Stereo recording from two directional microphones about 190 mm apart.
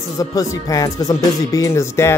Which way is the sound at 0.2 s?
20° left (ahead or behind).